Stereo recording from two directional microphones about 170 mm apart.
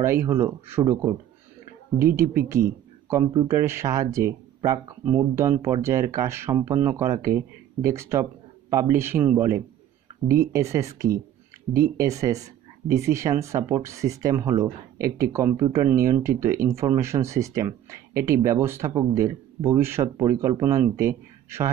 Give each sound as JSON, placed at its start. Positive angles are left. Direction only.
{"t": 0.0, "sound": "speech", "side_deg": -15}